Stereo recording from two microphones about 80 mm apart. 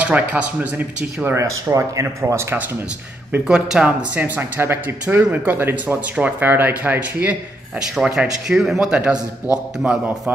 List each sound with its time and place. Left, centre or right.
0.0 s speech: centre
1.3 s speech: right
3.4 s a man's voice: centre
4.4 s speech: right
5.0 s speech: centre
7.9 s a man's voice: centre